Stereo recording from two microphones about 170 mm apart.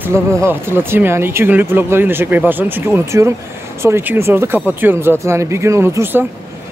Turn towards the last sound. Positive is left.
turn(degrees=-15)  # may be behind; listen again after turning